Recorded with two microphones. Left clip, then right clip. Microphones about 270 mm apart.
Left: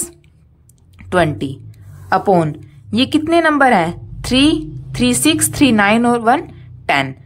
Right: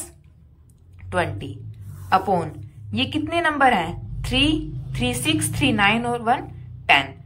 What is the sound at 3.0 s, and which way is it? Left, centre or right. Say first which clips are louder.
A woman's voice: left 9 dB; left.